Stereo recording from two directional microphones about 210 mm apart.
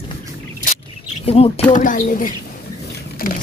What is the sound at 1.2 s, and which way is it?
Speech, 30° left (ahead or behind).